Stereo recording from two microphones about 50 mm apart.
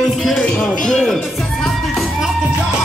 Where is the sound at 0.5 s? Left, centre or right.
Centre.